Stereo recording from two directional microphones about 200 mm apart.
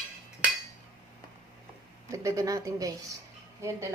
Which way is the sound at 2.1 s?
15° right (ahead or behind).